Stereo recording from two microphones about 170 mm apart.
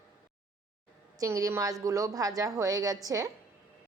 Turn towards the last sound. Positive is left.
turn(degrees=-20)  # may be behind; listen again after turning